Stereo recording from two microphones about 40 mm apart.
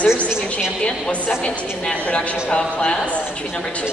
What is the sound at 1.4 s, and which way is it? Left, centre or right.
A woman's voice, left.